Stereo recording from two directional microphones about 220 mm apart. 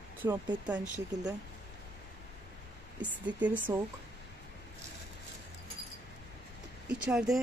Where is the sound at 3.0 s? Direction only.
5° right (ahead or behind).